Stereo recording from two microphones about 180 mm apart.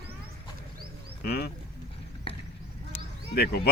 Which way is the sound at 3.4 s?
60° left (ahead or behind).